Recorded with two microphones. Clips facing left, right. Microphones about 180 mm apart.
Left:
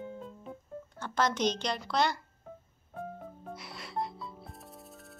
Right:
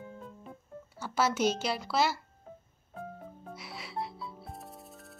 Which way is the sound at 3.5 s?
Centre (ahead or behind).